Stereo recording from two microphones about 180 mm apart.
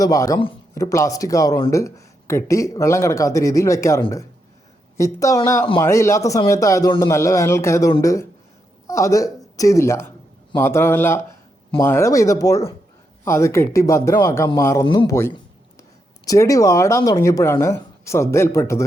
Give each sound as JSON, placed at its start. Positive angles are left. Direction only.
{"t": 0.0, "sound": "speech", "side_deg": 20}